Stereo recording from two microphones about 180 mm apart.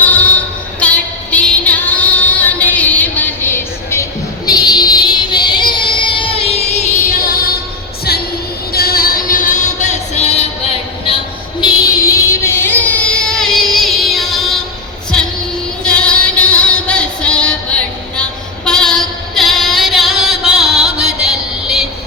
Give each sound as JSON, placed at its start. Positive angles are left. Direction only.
{"t": 0.0, "sound": "female singing", "side_deg": 10}
{"t": 4.4, "sound": "child singing", "side_deg": 20}
{"t": 8.7, "sound": "music", "side_deg": 55}
{"t": 11.6, "sound": "child singing", "side_deg": 15}
{"t": 15.8, "sound": "music", "side_deg": 5}
{"t": 18.2, "sound": "child singing", "side_deg": 5}
{"t": 21.2, "sound": "music", "side_deg": 0}